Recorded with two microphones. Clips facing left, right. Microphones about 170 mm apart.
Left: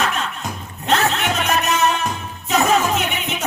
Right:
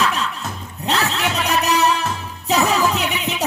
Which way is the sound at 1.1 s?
35° right (ahead or behind).